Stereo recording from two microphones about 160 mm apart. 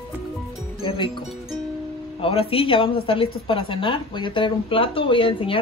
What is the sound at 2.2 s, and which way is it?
A woman's voice, 35° left (ahead or behind).